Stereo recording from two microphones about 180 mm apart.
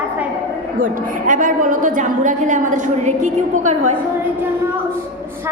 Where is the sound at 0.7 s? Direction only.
50° right (ahead or behind).